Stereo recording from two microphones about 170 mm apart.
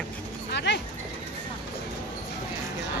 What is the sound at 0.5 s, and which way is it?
Dog, 90° left.